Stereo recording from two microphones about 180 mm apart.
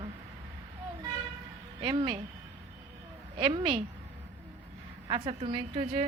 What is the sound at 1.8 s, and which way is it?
Speech, 25° right (ahead or behind).